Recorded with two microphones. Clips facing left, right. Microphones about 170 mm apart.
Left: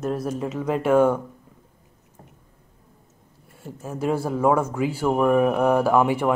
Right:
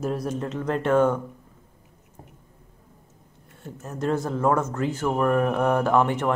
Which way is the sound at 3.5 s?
5° left (ahead or behind).